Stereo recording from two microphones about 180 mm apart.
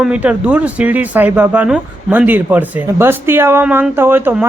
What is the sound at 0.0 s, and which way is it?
Speech, 5° right (ahead or behind).